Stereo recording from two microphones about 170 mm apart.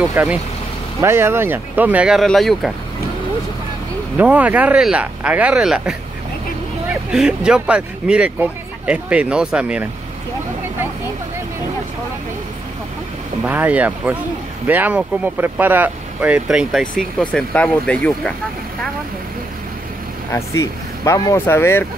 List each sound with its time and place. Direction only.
0.1 s speech: 10° right (ahead or behind)
4.2 s speech: 10° right (ahead or behind)
13.5 s speech: 10° right (ahead or behind)
16.8 s speech: 50° left (ahead or behind)
17.2 s speech: 5° left (ahead or behind)
20.2 s speech: 15° left (ahead or behind)